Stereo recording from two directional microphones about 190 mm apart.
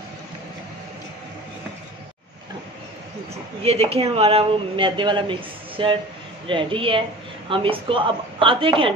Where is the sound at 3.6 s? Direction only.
30° right (ahead or behind).